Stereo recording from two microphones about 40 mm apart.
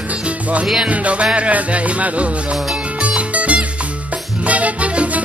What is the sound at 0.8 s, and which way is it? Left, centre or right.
Music, right.